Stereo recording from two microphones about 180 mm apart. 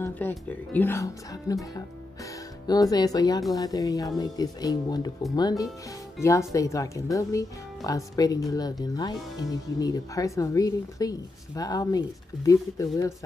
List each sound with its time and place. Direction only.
0.0 s speech: 10° left (ahead or behind)